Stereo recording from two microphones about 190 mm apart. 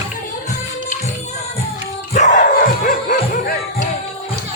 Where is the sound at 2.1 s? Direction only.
40° left (ahead or behind).